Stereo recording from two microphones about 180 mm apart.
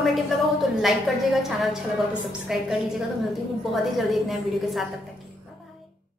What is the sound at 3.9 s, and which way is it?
Speech, centre (ahead or behind).